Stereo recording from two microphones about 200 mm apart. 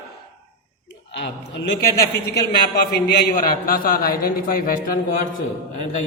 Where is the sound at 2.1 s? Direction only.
55° left (ahead or behind).